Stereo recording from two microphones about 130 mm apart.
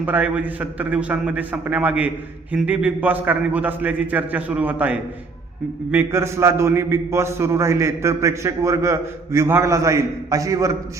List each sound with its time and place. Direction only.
0.0 s a man's voice: 10° right (ahead or behind)